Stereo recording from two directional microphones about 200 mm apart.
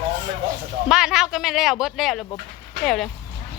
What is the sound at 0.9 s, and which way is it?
Speech, centre (ahead or behind).